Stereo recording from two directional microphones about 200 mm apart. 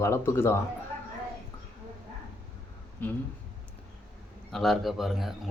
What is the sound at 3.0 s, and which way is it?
Speech, 10° left (ahead or behind).